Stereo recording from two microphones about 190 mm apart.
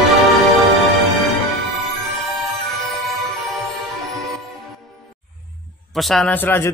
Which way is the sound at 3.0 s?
Centre (ahead or behind).